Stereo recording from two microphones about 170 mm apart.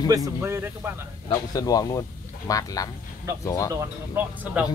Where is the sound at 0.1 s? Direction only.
15° right (ahead or behind).